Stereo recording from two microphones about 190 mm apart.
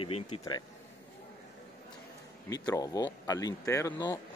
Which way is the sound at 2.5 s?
20° left (ahead or behind).